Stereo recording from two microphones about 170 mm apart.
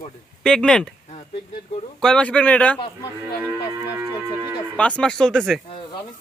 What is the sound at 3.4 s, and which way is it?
Speech, 15° right (ahead or behind).